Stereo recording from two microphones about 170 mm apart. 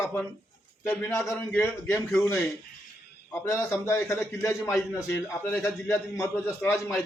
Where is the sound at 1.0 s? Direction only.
15° left (ahead or behind).